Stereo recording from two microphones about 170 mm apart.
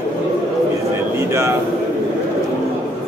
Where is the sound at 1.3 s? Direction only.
15° right (ahead or behind).